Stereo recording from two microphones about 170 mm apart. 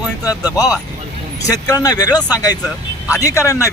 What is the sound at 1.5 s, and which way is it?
Speech, 20° left (ahead or behind).